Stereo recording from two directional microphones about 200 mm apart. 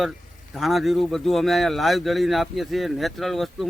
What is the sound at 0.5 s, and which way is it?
Speech, centre (ahead or behind).